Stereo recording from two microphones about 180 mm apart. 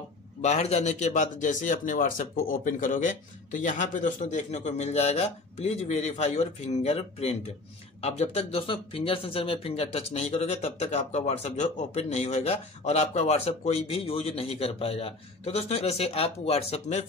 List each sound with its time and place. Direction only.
0.4 s a man's voice: 40° left (ahead or behind)